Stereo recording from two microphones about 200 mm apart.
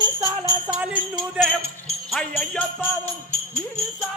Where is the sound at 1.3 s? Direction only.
Centre (ahead or behind).